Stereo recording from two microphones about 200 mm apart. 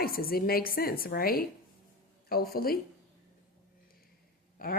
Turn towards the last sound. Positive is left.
turn(degrees=45)  # may be behind; listen again after turning